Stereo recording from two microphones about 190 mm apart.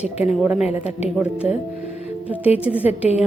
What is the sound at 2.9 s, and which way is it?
Speech, 35° left (ahead or behind).